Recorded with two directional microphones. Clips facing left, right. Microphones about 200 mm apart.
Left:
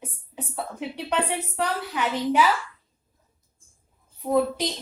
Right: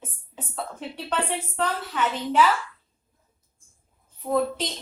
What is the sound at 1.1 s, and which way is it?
A woman's voice, 10° left (ahead or behind).